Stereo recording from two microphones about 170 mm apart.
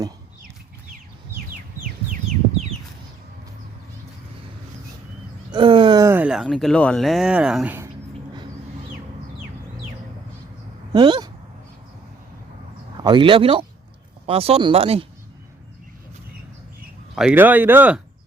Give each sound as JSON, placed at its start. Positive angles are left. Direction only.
{"t": 5.5, "sound": "speech", "side_deg": -30}
{"t": 10.9, "sound": "speech", "side_deg": -25}
{"t": 13.0, "sound": "speech", "side_deg": -30}
{"t": 17.2, "sound": "speech", "side_deg": -10}